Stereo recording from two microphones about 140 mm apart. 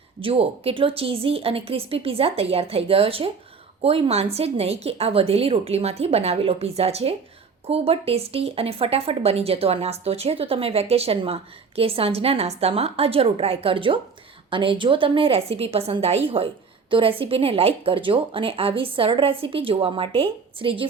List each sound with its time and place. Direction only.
0.2 s a woman's voice: 40° right (ahead or behind)